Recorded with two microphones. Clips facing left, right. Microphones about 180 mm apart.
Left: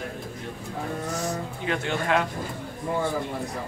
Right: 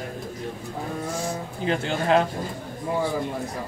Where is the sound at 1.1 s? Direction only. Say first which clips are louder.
Right 1 dB; 30° right (ahead or behind).